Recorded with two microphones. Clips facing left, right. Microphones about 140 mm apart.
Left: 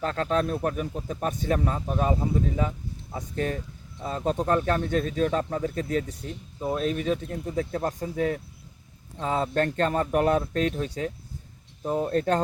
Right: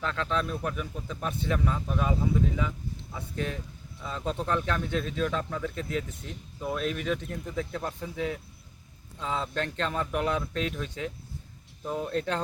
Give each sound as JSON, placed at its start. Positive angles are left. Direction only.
{"t": 0.0, "sound": "speech", "side_deg": 45}